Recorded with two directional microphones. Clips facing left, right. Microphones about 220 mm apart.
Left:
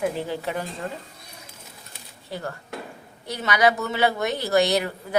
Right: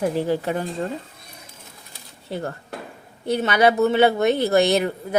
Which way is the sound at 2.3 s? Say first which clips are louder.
Right 4 dB; 30° right (ahead or behind).